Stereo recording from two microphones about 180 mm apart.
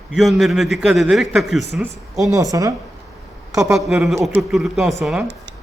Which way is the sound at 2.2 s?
20° right (ahead or behind).